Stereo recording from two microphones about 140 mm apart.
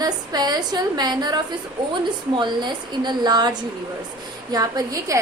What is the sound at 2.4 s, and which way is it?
A woman's voice, 35° right (ahead or behind).